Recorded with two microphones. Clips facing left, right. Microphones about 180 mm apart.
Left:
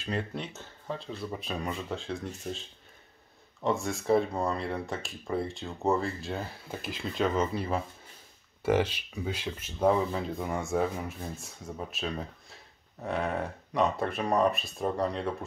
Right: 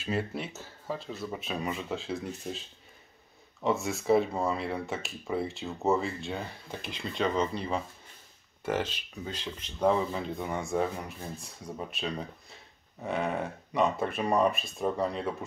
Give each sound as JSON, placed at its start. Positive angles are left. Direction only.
{"t": 0.0, "sound": "speech", "side_deg": -5}
{"t": 3.6, "sound": "speech", "side_deg": 0}